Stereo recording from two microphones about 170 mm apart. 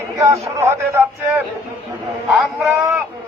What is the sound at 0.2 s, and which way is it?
A man's voice, 20° right (ahead or behind).